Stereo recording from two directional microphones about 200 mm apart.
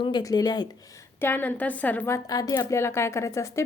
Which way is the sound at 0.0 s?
20° left (ahead or behind).